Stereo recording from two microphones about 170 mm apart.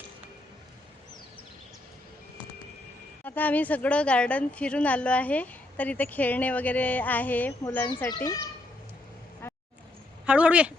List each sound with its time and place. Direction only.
3.2 s a woman's voice: 10° left (ahead or behind)
9.4 s a sound: 15° left (ahead or behind)
10.2 s speech: 5° right (ahead or behind)